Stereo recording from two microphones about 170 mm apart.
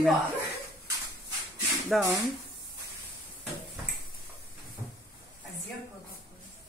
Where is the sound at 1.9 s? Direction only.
Centre (ahead or behind).